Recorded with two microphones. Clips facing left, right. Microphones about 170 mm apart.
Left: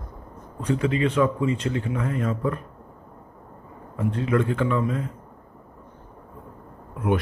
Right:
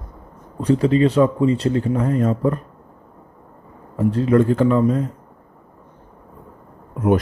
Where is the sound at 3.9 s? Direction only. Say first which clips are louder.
Right 7 dB; 35° right (ahead or behind).